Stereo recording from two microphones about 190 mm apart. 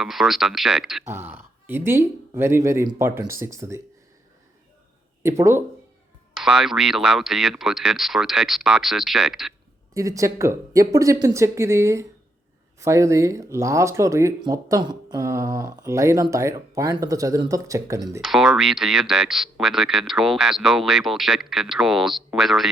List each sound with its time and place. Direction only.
0.0 s speech: centre (ahead or behind)
1.0 s speech: 10° right (ahead or behind)
5.2 s speech: 15° right (ahead or behind)
6.3 s speech: centre (ahead or behind)
9.9 s speech: 15° right (ahead or behind)
18.2 s speech: centre (ahead or behind)